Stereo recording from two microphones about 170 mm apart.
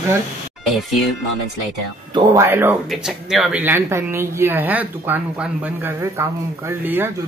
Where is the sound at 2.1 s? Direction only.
20° right (ahead or behind).